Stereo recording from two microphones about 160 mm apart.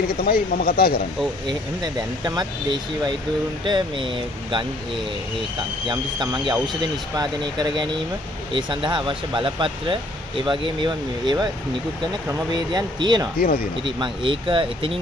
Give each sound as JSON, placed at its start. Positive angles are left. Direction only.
{"t": 0.2, "sound": "speech", "side_deg": 65}
{"t": 1.5, "sound": "speech", "side_deg": -25}
{"t": 5.9, "sound": "speech", "side_deg": -30}
{"t": 12.5, "sound": "speech", "side_deg": -25}